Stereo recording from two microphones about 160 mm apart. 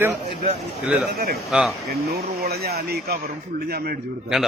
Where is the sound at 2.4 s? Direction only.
80° right.